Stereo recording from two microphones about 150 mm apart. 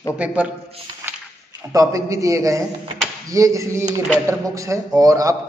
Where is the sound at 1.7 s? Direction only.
20° right (ahead or behind).